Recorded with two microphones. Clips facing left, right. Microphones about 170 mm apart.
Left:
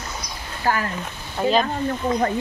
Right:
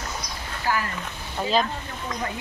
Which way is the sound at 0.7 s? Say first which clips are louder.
Left 3 dB; 50° left (ahead or behind).